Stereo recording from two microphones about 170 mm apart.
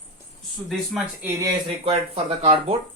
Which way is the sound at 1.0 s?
15° right (ahead or behind).